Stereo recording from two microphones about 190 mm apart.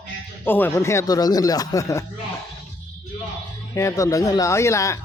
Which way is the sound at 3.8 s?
15° left (ahead or behind).